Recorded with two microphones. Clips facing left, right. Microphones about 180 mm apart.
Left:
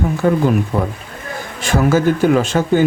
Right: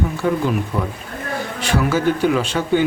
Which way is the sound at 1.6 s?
45° left (ahead or behind).